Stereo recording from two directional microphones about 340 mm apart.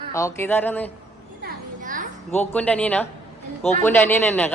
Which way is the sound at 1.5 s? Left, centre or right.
Right.